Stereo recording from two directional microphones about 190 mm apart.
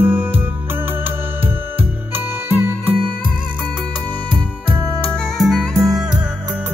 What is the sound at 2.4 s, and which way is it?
Music, 10° right (ahead or behind).